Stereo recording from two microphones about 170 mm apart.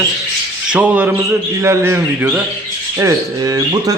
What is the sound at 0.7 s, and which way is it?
A man's voice, 5° right (ahead or behind).